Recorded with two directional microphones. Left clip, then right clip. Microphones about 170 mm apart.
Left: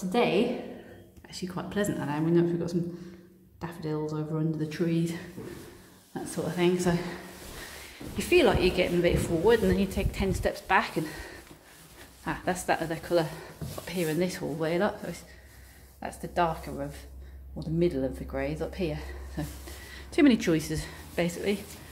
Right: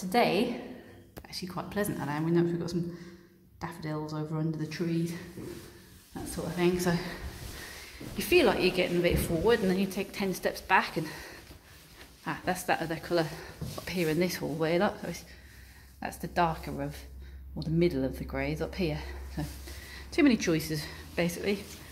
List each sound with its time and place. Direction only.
0.1 s speech: centre (ahead or behind)
4.6 s speech: 20° left (ahead or behind)
6.3 s speech: 15° left (ahead or behind)
8.2 s speech: 5° left (ahead or behind)
13.9 s speech: 15° right (ahead or behind)
19.4 s speech: 5° right (ahead or behind)
20.1 s speech: 10° left (ahead or behind)